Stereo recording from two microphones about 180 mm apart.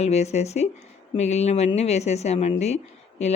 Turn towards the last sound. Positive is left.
turn(degrees=35)  # may be behind; listen again after turning